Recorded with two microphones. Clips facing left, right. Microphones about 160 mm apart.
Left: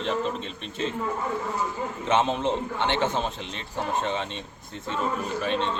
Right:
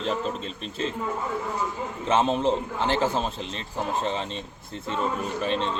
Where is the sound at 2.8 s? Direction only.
35° right (ahead or behind).